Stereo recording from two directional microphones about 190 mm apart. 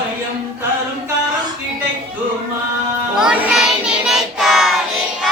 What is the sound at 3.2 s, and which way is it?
Child singing, 5° right (ahead or behind).